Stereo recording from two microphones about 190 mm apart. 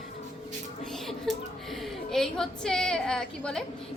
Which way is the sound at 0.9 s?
Centre (ahead or behind).